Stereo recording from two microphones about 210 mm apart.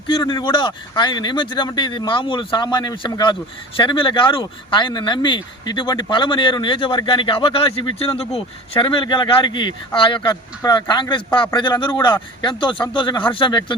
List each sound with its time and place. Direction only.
0.1 s speech: 20° left (ahead or behind)